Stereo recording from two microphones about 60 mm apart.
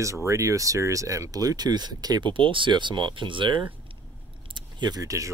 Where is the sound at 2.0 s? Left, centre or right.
Right.